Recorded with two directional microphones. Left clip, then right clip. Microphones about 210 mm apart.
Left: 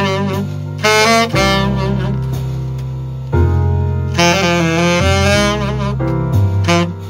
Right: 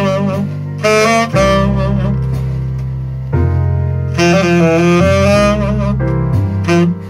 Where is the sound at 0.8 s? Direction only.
5° left (ahead or behind).